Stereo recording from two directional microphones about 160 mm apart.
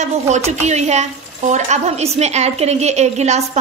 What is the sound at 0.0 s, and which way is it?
A woman's voice, 45° right (ahead or behind).